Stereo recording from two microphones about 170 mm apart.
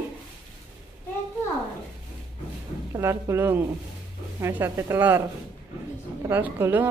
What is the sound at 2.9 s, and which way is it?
Speech, 15° right (ahead or behind).